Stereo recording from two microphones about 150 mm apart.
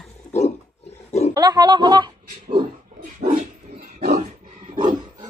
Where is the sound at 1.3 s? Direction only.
25° right (ahead or behind).